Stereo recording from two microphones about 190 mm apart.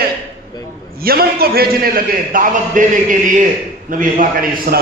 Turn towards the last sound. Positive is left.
turn(degrees=-50)  # may be behind; listen again after turning